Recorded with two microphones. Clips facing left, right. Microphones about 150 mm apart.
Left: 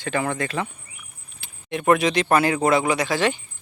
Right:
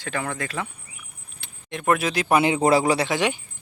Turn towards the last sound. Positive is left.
turn(degrees=-15)  # may be behind; listen again after turning